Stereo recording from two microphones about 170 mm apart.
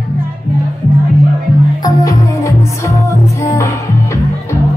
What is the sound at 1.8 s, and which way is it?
Music, 20° left (ahead or behind).